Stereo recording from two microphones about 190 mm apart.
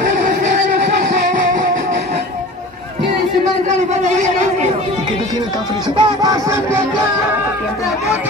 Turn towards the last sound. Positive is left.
turn(degrees=-15)  # may be behind; listen again after turning